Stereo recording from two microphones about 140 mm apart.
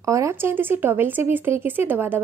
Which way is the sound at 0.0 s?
20° right (ahead or behind).